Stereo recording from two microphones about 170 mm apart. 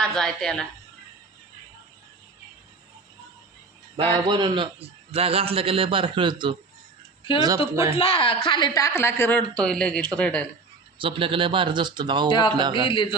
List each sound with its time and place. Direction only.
0.0 s a woman's voice: 5° left (ahead or behind)
3.9 s a man's voice: 30° right (ahead or behind)
7.9 s speech: 35° left (ahead or behind); by 10.4 s 5° left (ahead or behind)
10.9 s speech: 30° right (ahead or behind)
12.9 s speech: 30° left (ahead or behind)